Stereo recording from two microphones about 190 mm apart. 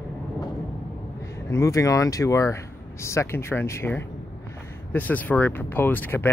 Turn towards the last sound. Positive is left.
turn(degrees=10)  # may be behind; listen again after turning